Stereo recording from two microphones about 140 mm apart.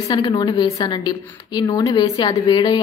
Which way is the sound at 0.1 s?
30° left (ahead or behind).